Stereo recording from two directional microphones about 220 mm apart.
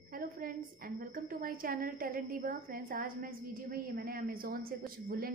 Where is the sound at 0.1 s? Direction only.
40° right (ahead or behind).